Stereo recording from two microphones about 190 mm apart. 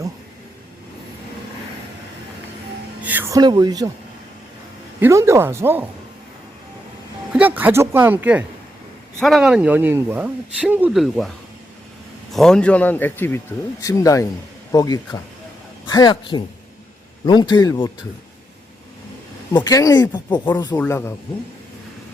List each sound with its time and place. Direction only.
3.0 s speech: 10° right (ahead or behind)
4.9 s speech: 15° right (ahead or behind)
7.3 s speech: 10° right (ahead or behind)
12.3 s speech: 5° left (ahead or behind); by 17.9 s 20° left (ahead or behind)
19.5 s speech: 20° left (ahead or behind)